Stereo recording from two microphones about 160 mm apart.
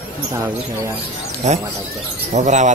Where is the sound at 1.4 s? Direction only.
45° right (ahead or behind).